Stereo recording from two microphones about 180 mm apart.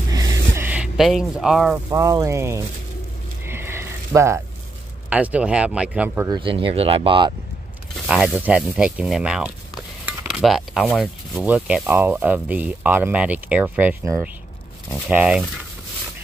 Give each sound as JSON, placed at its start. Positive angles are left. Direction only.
{"t": 0.1, "sound": "music", "side_deg": -20}
{"t": 0.7, "sound": "speech", "side_deg": -5}
{"t": 1.9, "sound": "speech", "side_deg": -20}
{"t": 3.4, "sound": "a sound", "side_deg": -15}
{"t": 5.1, "sound": "speech", "side_deg": -10}
{"t": 6.3, "sound": "speech", "side_deg": -30}
{"t": 8.1, "sound": "speech", "side_deg": -5}